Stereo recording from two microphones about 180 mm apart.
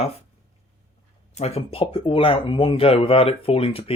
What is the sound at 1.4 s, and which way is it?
Speech, 35° left (ahead or behind).